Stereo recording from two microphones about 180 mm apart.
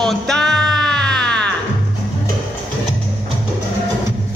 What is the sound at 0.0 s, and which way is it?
Music, 5° left (ahead or behind).